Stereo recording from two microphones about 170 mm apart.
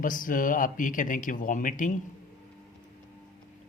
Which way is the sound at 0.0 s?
55° left (ahead or behind).